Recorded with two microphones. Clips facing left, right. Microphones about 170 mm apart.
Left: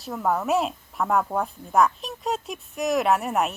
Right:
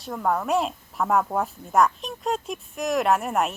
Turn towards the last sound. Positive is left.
turn(degrees=0)  # may be behind; listen again after turning